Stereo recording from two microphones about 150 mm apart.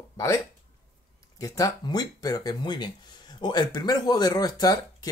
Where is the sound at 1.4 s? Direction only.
25° left (ahead or behind).